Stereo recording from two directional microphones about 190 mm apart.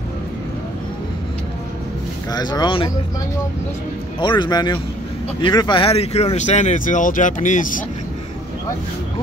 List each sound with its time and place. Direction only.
2.3 s speech: 20° left (ahead or behind)
4.2 s speech: 25° left (ahead or behind); by 7.8 s 45° left (ahead or behind)